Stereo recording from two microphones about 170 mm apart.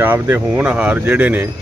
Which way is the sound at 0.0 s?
10° right (ahead or behind).